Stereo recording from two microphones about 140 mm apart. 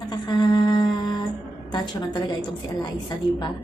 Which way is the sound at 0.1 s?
30° left (ahead or behind).